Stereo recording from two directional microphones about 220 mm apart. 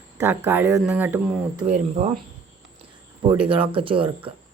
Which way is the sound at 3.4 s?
25° right (ahead or behind).